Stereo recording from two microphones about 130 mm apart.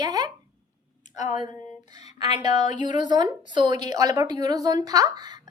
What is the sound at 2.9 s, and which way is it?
A woman's voice, 35° right (ahead or behind).